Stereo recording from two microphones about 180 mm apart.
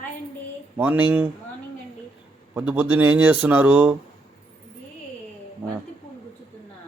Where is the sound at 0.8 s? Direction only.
10° right (ahead or behind).